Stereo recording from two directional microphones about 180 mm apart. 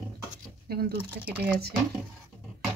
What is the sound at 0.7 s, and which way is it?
Speech, 60° right (ahead or behind).